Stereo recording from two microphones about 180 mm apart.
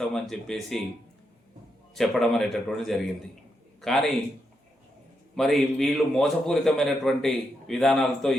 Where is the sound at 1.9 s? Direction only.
Centre (ahead or behind).